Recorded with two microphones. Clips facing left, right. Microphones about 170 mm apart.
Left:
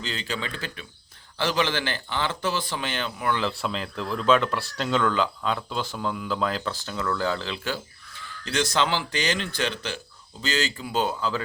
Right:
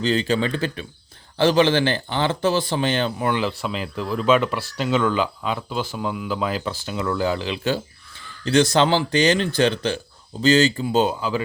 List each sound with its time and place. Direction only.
0.0 s speech: 35° right (ahead or behind)
3.6 s speech: 5° right (ahead or behind)
8.4 s speech: 30° right (ahead or behind); by 11.4 s 15° right (ahead or behind)